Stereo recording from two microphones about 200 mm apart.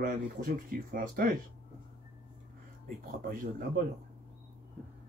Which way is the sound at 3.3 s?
45° right (ahead or behind).